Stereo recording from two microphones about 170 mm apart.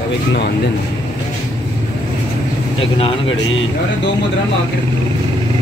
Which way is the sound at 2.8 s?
30° left (ahead or behind).